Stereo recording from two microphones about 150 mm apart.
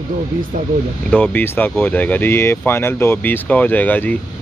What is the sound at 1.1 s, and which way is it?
Speech, 10° left (ahead or behind).